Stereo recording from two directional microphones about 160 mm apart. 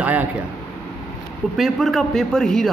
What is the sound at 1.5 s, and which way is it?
A man's voice, centre (ahead or behind).